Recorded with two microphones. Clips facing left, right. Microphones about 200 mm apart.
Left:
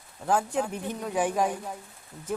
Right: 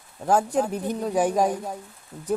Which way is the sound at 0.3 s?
40° right (ahead or behind).